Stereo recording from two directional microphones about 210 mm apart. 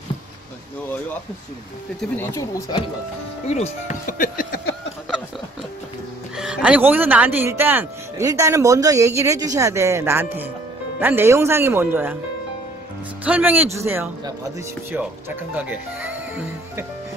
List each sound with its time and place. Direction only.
2.0 s speech: 10° left (ahead or behind)
3.4 s speech: 30° left (ahead or behind)
6.3 s speech: 5° right (ahead or behind)
13.2 s speech: 5° right (ahead or behind)